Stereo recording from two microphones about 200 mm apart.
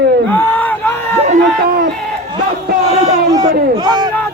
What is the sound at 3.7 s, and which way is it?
Speech, 20° right (ahead or behind).